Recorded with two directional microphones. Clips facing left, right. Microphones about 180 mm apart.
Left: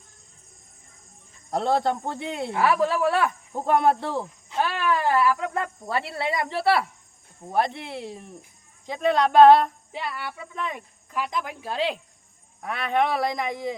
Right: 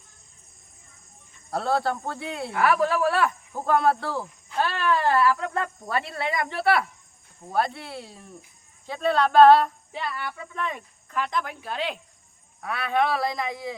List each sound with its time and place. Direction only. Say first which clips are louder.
1.5 s speech: left 2 dB; 20° left (ahead or behind)